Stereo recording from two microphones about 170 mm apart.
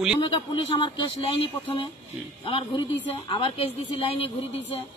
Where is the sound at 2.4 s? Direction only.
30° left (ahead or behind).